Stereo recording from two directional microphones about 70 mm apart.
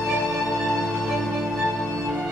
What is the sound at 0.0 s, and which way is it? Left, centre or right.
Music, centre.